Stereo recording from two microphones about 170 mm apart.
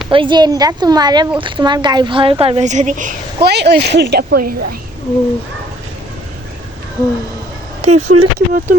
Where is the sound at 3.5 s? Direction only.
75° right (ahead or behind).